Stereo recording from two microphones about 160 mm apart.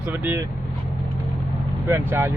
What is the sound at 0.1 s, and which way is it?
Speech, 15° right (ahead or behind).